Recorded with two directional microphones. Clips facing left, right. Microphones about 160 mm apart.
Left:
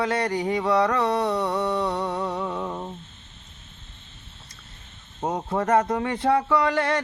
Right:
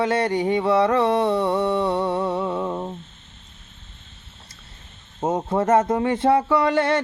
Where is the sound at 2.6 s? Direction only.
20° right (ahead or behind).